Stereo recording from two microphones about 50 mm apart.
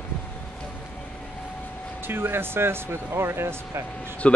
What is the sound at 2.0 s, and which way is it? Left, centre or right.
Speech, right.